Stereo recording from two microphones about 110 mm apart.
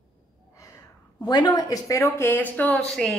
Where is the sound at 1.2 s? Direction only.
40° left (ahead or behind).